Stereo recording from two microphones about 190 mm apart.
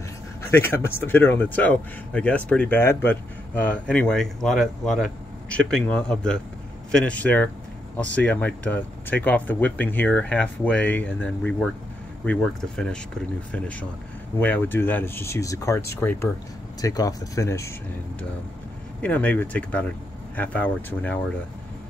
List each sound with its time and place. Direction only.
0.5 s speech: 10° left (ahead or behind)
18.9 s speech: 5° left (ahead or behind)